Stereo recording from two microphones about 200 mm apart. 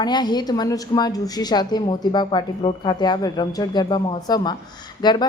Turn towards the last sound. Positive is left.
turn(degrees=20)  # may be behind; listen again after turning